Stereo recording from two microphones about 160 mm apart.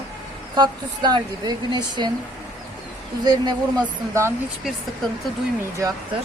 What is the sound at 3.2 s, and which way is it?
A woman's voice, 25° right (ahead or behind).